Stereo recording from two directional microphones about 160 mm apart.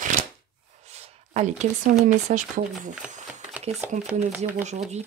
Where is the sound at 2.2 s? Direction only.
50° right (ahead or behind).